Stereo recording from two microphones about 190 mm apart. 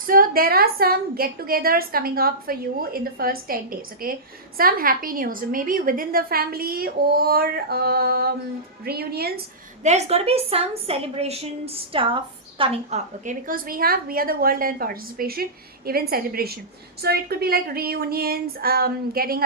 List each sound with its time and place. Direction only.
0.1 s a woman's voice: 50° right (ahead or behind)
9.8 s a woman's voice: 35° right (ahead or behind)
13.2 s a woman's voice: 50° right (ahead or behind)